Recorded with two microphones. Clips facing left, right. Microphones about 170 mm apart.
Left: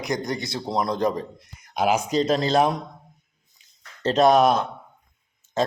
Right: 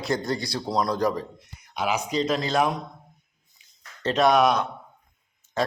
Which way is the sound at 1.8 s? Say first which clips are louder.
Left 4 dB; 45° left (ahead or behind).